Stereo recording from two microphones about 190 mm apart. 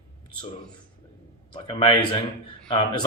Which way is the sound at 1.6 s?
25° left (ahead or behind).